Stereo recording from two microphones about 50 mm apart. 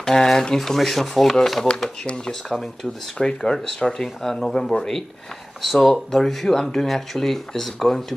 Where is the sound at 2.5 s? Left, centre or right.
Centre.